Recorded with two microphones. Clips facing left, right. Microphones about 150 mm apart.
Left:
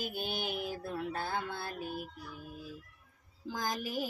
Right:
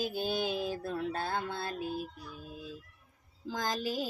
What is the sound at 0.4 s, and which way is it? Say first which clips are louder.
Music: right 4 dB; 90° right.